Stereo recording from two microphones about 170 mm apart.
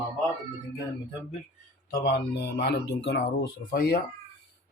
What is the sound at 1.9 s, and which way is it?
A man's voice, 70° left (ahead or behind).